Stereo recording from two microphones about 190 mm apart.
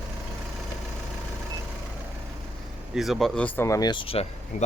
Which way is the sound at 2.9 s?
Centre (ahead or behind).